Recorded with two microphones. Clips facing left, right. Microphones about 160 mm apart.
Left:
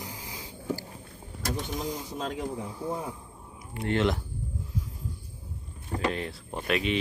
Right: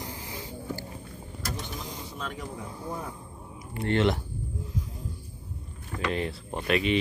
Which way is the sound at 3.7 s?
Centre (ahead or behind).